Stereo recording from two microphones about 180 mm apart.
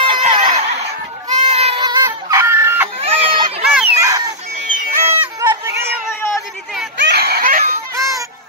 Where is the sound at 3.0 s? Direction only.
30° right (ahead or behind).